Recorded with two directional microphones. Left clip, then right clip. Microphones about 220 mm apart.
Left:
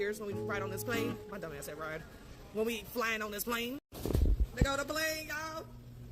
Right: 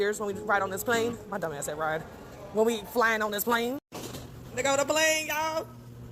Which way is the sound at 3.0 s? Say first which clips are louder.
Right 10 dB; 25° left (ahead or behind).